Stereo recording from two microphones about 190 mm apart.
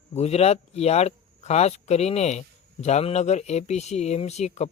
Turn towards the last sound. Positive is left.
turn(degrees=35)  # may be behind; listen again after turning